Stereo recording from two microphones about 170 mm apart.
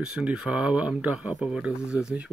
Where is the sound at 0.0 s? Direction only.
5° right (ahead or behind).